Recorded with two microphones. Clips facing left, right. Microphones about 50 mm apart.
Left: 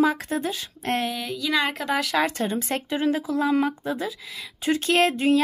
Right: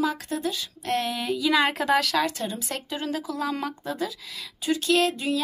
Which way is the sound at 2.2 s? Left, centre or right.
Left.